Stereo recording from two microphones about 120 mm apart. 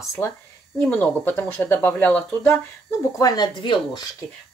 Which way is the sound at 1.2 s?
15° left (ahead or behind).